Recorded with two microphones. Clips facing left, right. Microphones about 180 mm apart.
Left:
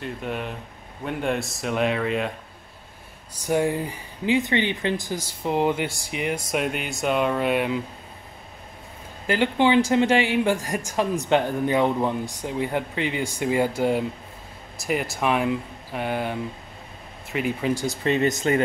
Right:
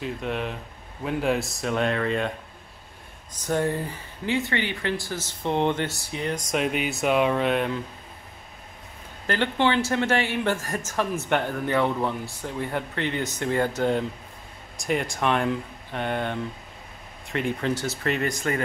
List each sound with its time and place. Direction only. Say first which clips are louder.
0.0 s speech: right 1 dB; centre (ahead or behind)
3.4 s a man's voice: left 2 dB; 10° left (ahead or behind)
9.3 s a man's voice: left 4 dB; 15° left (ahead or behind)